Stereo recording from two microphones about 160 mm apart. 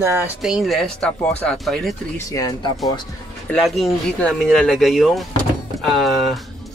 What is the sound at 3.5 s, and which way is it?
Speech, centre (ahead or behind).